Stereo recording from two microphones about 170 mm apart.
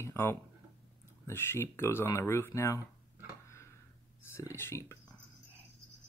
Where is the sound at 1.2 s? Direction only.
15° left (ahead or behind).